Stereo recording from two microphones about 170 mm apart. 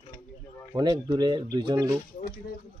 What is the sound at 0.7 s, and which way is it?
A man's voice, 25° right (ahead or behind).